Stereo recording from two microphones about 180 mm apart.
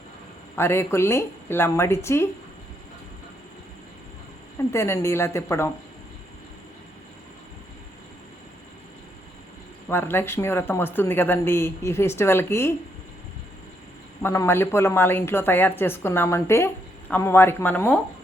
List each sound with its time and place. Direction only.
0.5 s a woman's voice: 15° left (ahead or behind)
4.7 s a woman's voice: 15° left (ahead or behind)
9.9 s a woman's voice: 10° left (ahead or behind)
14.2 s a woman's voice: 15° left (ahead or behind)